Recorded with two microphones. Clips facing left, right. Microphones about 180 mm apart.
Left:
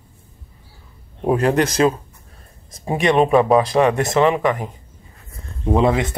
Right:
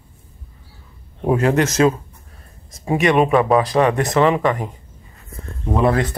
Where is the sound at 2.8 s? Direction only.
30° left (ahead or behind).